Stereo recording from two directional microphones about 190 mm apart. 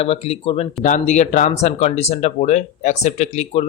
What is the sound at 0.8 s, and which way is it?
Speech, 40° left (ahead or behind).